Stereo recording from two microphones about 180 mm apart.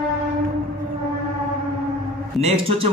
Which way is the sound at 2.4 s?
35° right (ahead or behind).